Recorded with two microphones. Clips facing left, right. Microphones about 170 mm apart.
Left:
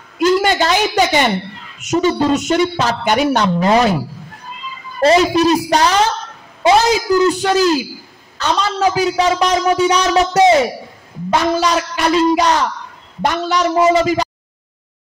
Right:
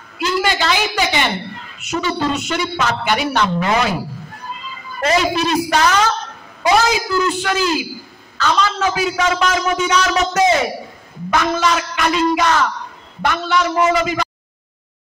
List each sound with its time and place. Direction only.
0.2 s a woman's voice: 45° left (ahead or behind)
5.0 s a woman's voice: 40° left (ahead or behind)
7.2 s a woman's voice: 40° left (ahead or behind)
13.7 s speech: 20° left (ahead or behind)
14.0 s speech: 40° left (ahead or behind)